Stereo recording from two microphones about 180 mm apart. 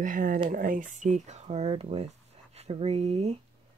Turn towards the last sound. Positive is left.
turn(degrees=-35)  # may be behind; listen again after turning